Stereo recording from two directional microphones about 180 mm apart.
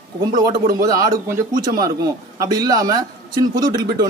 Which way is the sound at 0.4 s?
20° right (ahead or behind).